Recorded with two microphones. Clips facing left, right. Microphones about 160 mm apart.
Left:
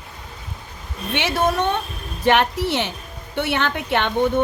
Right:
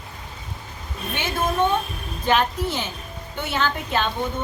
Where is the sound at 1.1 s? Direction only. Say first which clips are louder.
Left 5 dB; 75° left (ahead or behind).